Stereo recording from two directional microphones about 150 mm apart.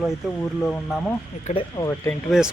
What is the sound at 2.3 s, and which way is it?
Speech, centre (ahead or behind).